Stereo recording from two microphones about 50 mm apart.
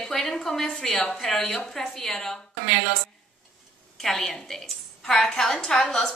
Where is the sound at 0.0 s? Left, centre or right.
Centre.